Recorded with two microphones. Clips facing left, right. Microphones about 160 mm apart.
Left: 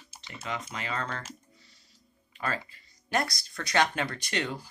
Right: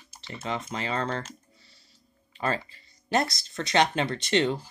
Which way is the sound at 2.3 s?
25° right (ahead or behind).